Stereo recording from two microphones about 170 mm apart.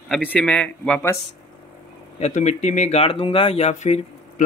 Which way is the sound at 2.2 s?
45° left (ahead or behind).